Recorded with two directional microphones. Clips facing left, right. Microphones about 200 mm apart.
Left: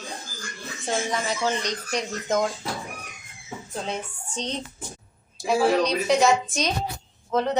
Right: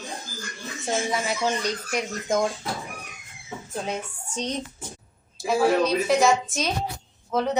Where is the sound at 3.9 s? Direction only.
10° right (ahead or behind).